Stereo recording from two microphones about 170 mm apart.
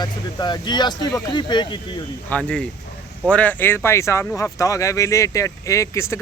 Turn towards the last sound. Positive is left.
turn(degrees=20)  # may be behind; listen again after turning